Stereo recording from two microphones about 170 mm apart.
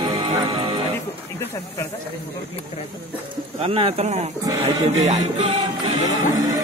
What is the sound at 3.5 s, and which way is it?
Music, 35° right (ahead or behind).